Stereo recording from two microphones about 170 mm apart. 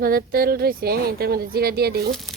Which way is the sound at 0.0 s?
60° right (ahead or behind).